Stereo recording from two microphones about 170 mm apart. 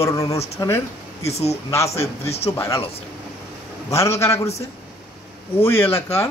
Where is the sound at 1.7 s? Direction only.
15° left (ahead or behind).